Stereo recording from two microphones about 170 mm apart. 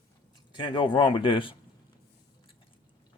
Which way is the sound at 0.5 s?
25° left (ahead or behind).